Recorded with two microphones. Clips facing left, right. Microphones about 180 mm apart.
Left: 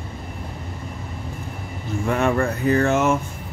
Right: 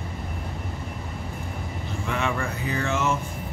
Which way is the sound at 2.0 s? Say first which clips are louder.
Left 8 dB; 45° left (ahead or behind).